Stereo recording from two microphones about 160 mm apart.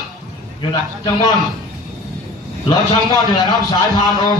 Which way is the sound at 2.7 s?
25° left (ahead or behind).